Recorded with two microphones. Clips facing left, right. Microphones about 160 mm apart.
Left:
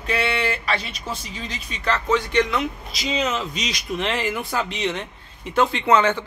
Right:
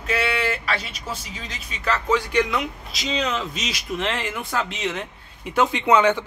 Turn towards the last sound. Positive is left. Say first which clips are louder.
# right 1 dB
turn(degrees=-15)  # may be behind; listen again after turning